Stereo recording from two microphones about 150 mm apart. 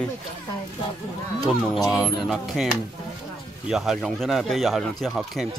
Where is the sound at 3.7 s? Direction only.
Centre (ahead or behind).